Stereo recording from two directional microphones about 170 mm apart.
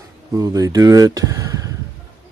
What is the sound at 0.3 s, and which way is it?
Speech, 20° right (ahead or behind).